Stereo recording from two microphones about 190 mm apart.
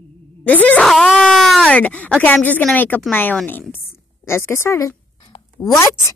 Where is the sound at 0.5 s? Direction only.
10° left (ahead or behind).